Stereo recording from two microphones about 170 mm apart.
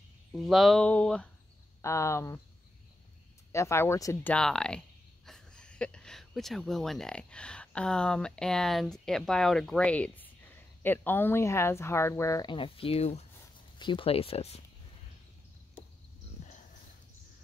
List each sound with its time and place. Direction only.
0.3 s speech: centre (ahead or behind)
1.8 s speech: 15° left (ahead or behind)
3.5 s speech: 15° left (ahead or behind); by 14.6 s 35° left (ahead or behind)
16.4 s dog: 45° left (ahead or behind)